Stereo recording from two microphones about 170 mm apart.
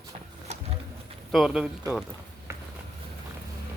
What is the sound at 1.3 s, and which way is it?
Speech, centre (ahead or behind).